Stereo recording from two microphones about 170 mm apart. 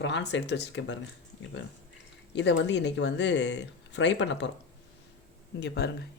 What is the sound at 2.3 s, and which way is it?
Speech, 90° left.